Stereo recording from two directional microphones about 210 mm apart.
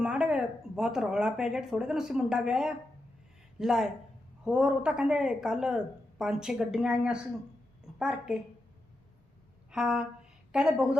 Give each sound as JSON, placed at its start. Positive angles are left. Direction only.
{"t": 0.0, "sound": "a woman's voice", "side_deg": -5}
{"t": 9.7, "sound": "a woman's voice", "side_deg": -5}